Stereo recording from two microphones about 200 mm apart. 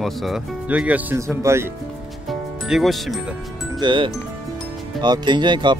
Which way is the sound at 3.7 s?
25° right (ahead or behind).